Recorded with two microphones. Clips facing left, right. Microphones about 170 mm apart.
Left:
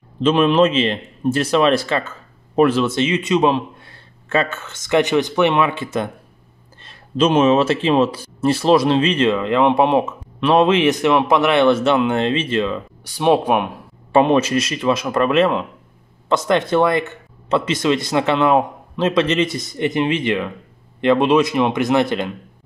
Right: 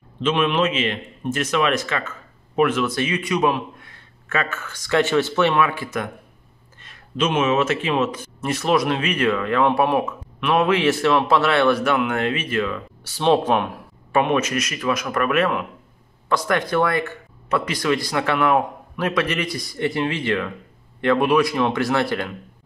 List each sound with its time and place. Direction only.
0.2 s speech: 35° left (ahead or behind)
13.0 s speech: 15° left (ahead or behind)
14.1 s speech: 30° left (ahead or behind)